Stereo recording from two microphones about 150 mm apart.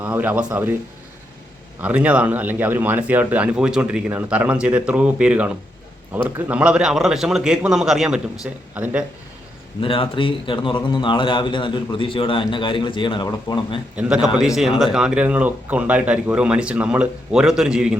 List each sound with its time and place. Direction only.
0.0 s speech: 10° right (ahead or behind)
1.8 s a man's voice: 10° right (ahead or behind)
9.8 s a man's voice: 35° left (ahead or behind)
13.9 s a man's voice: 5° right (ahead or behind)